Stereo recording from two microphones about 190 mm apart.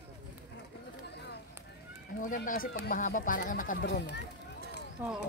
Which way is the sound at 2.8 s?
45° left (ahead or behind).